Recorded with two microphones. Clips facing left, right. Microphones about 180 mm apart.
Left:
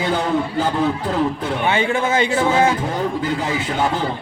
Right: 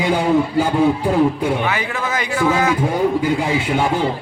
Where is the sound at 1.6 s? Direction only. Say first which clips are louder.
Left 4 dB; 25° left (ahead or behind).